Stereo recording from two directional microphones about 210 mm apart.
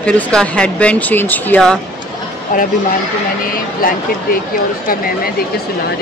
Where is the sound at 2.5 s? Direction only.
40° left (ahead or behind).